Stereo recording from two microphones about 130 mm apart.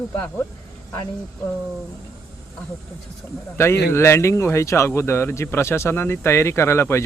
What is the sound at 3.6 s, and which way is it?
Speech, 20° left (ahead or behind).